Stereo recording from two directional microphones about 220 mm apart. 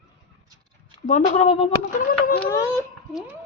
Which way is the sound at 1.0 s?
35° left (ahead or behind).